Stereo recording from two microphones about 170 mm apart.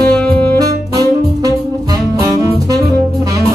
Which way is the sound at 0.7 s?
20° right (ahead or behind).